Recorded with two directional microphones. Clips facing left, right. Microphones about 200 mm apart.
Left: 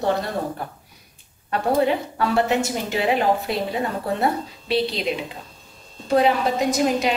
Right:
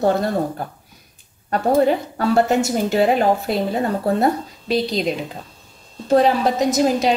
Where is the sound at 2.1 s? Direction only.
40° right (ahead or behind).